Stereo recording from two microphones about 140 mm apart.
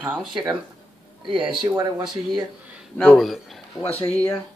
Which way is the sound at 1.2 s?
35° right (ahead or behind).